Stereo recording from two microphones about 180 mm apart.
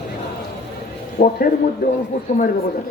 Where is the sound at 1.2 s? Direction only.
60° left (ahead or behind).